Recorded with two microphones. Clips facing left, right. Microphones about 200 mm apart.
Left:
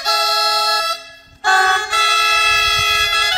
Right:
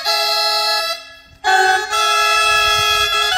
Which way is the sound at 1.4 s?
25° right (ahead or behind).